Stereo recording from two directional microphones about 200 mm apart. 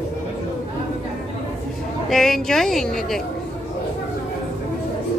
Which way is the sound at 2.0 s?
Centre (ahead or behind).